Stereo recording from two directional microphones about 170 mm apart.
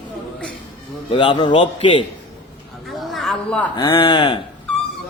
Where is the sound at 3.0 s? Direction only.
Centre (ahead or behind).